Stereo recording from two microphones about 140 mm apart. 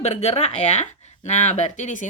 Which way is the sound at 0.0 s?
50° left (ahead or behind).